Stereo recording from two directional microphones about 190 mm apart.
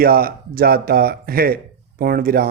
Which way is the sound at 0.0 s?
50° right (ahead or behind).